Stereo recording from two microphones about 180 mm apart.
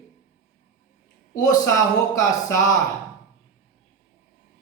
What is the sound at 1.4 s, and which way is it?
Speech, 20° left (ahead or behind).